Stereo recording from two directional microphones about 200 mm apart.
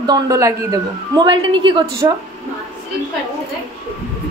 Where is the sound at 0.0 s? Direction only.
20° right (ahead or behind).